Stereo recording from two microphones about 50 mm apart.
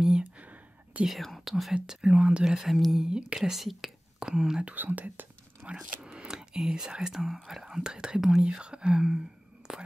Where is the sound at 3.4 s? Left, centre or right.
Centre.